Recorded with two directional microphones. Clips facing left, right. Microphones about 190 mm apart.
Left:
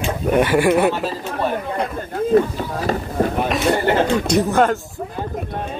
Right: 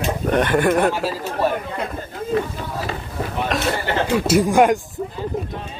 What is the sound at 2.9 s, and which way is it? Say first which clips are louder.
Run: left 8 dB; 40° left (ahead or behind).